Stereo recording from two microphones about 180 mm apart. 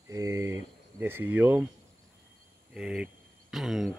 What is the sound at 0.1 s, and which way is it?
Cricket, 15° right (ahead or behind).